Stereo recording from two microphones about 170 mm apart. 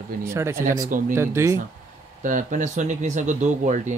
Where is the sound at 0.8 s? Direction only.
50° right (ahead or behind).